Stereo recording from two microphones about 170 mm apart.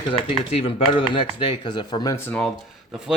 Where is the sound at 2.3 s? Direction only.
5° left (ahead or behind).